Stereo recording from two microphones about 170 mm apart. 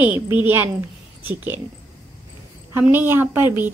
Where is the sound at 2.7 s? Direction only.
10° right (ahead or behind).